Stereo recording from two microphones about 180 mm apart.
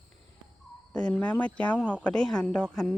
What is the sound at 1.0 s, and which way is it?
Speech, 5° left (ahead or behind).